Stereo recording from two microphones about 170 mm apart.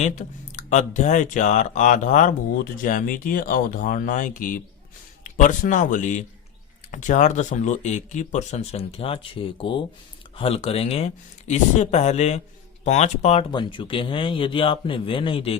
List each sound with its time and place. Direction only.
0.0 s speech: 45° left (ahead or behind)
13.5 s speech: 30° left (ahead or behind)